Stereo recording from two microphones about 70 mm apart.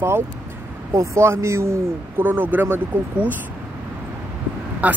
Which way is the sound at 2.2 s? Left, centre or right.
Right.